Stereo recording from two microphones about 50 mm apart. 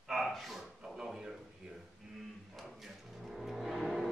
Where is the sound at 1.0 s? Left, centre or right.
Centre.